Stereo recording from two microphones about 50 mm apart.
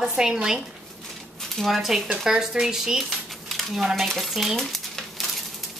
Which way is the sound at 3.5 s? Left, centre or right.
Centre.